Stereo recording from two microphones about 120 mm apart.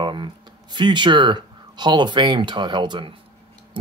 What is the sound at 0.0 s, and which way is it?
Speech, 40° right (ahead or behind).